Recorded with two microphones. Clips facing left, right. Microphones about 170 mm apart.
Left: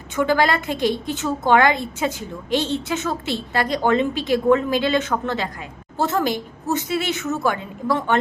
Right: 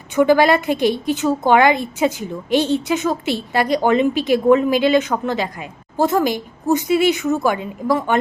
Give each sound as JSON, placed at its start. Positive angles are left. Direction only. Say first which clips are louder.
{"t": 0.2, "sound": "a woman's voice", "louder": "right 6 dB", "side_deg": -15}